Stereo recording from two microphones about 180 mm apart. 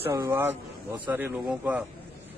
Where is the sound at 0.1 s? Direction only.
15° right (ahead or behind).